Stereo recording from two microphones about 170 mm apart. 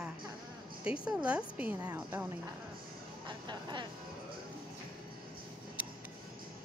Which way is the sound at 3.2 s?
25° right (ahead or behind).